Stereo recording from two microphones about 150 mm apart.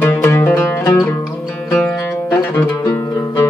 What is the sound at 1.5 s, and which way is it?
Music, 5° left (ahead or behind).